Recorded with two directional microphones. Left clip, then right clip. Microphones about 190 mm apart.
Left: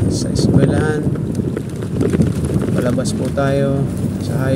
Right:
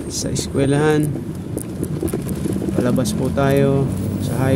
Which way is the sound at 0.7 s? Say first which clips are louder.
Right 2 dB; 15° right (ahead or behind).